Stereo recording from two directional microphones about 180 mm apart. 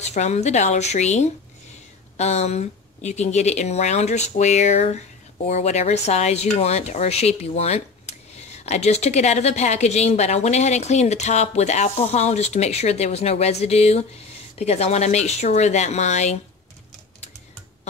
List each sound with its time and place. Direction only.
0.0 s speech: 40° left (ahead or behind)